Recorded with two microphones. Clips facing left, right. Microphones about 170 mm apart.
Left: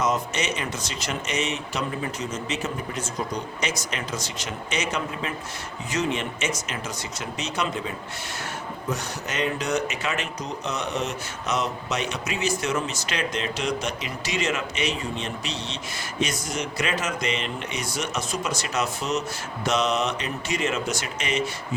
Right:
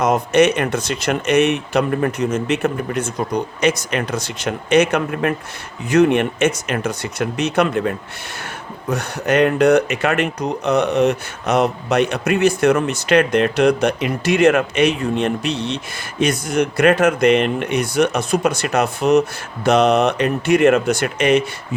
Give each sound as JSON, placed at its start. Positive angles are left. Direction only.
{"t": 0.0, "sound": "speech", "side_deg": -60}